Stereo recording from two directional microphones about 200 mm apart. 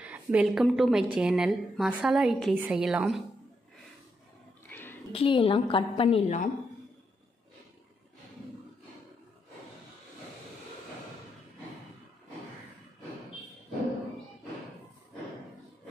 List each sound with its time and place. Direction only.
0.0 s a woman's voice: 5° right (ahead or behind)
4.6 s a sound: 10° left (ahead or behind)
5.1 s a woman's voice: 25° left (ahead or behind)